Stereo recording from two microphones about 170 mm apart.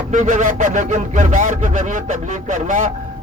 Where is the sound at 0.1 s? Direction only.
45° right (ahead or behind).